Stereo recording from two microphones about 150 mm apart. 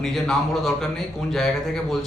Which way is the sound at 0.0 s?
Centre (ahead or behind).